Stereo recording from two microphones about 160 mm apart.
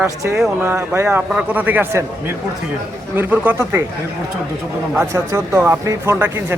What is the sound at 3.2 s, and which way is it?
Speech, 10° right (ahead or behind).